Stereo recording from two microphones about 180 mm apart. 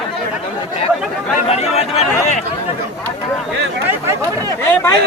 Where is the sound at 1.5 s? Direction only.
35° left (ahead or behind).